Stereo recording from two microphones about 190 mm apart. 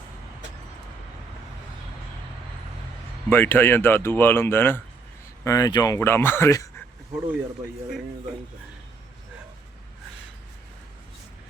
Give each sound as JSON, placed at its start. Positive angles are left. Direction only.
{"t": 3.2, "sound": "speech", "side_deg": 10}